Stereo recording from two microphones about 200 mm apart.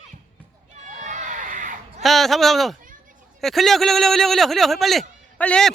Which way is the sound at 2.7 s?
40° right (ahead or behind).